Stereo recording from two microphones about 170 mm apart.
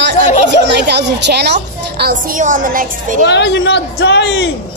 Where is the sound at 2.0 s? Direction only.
55° right (ahead or behind).